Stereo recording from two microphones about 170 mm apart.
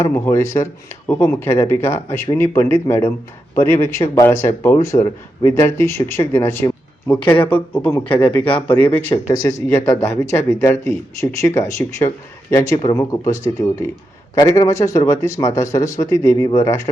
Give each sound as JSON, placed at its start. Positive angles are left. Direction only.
{"t": 0.0, "sound": "speech", "side_deg": 15}
{"t": 5.5, "sound": "speech", "side_deg": 15}
{"t": 9.2, "sound": "speech", "side_deg": 20}